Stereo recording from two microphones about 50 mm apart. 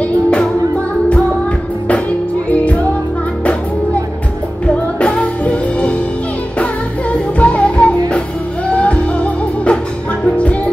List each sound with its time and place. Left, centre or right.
0.0 s music: left
2.5 s music: left
5.0 s music: left